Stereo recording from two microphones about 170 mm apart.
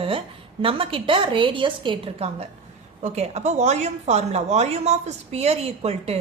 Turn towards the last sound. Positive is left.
turn(degrees=-35)  # may be behind; listen again after turning